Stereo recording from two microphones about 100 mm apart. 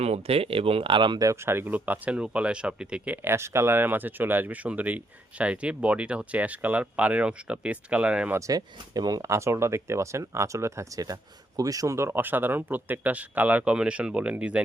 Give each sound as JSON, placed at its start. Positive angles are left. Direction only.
{"t": 0.0, "sound": "speech", "side_deg": -90}
{"t": 1.2, "sound": "speech", "side_deg": -30}
{"t": 3.2, "sound": "speech", "side_deg": -25}
{"t": 8.4, "sound": "speech", "side_deg": -35}
{"t": 9.2, "sound": "speech", "side_deg": -30}